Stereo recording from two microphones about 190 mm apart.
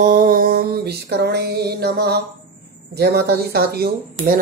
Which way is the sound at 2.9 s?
60° right (ahead or behind).